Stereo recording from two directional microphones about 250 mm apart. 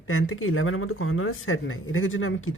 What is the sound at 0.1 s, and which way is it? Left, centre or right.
Speech, left.